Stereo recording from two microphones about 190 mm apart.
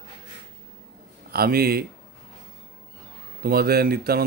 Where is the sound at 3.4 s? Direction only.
55° right (ahead or behind).